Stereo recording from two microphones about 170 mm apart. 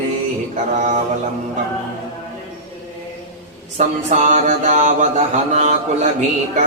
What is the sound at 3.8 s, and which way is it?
Mantra, 45° right (ahead or behind).